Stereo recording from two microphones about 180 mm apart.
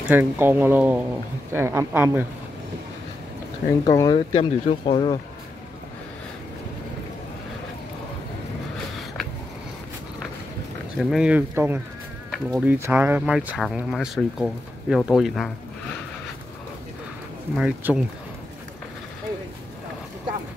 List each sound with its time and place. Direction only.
0.1 s speech: 10° right (ahead or behind)
3.8 s speech: 20° left (ahead or behind)
11.0 s speech: centre (ahead or behind)
17.6 s speech: 5° right (ahead or behind)